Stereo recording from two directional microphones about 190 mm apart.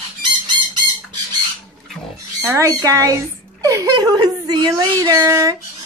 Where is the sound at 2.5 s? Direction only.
15° right (ahead or behind).